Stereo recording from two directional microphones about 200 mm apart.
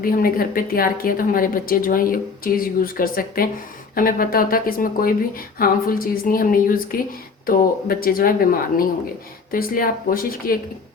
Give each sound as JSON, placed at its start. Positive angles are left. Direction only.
{"t": 0.0, "sound": "a woman's voice", "side_deg": 45}